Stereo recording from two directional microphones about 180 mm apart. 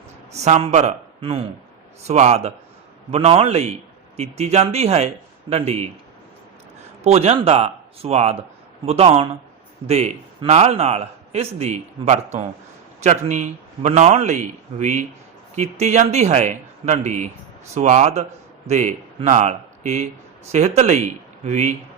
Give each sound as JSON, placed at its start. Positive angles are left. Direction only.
{"t": 0.3, "sound": "a man's voice", "side_deg": -40}
{"t": 7.0, "sound": "a man's voice", "side_deg": -35}